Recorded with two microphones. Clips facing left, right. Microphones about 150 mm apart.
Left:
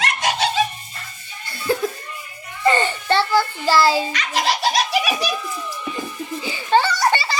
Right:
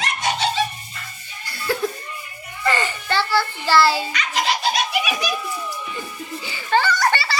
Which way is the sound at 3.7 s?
15° left (ahead or behind).